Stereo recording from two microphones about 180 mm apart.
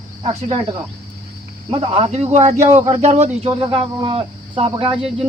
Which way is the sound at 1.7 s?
35° right (ahead or behind).